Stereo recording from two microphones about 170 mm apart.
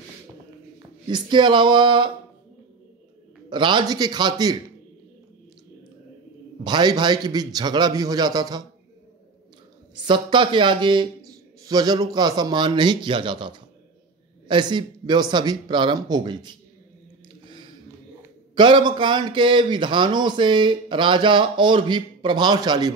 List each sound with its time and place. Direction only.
1.0 s a man's voice: 25° right (ahead or behind)
3.4 s a man's voice: 30° right (ahead or behind)
6.6 s a man's voice: 25° right (ahead or behind)
10.0 s a man's voice: 30° right (ahead or behind)
18.5 s a man's voice: 30° right (ahead or behind)